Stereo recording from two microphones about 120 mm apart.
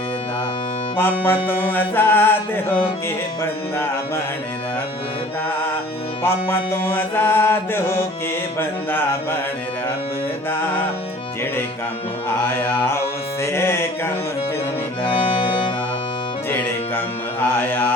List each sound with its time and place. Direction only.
0.9 s music: 20° left (ahead or behind)
6.2 s music: 20° left (ahead or behind)
12.5 s music: 15° left (ahead or behind)
15.0 s accordion: 45° left (ahead or behind)
17.5 s mantra: 15° left (ahead or behind)